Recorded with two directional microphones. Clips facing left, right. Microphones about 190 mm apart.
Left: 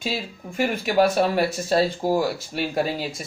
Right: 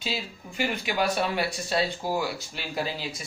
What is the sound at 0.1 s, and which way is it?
Speech, 50° left (ahead or behind).